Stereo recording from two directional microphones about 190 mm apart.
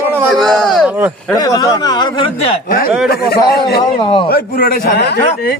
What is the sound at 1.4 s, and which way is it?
Speech, 20° left (ahead or behind).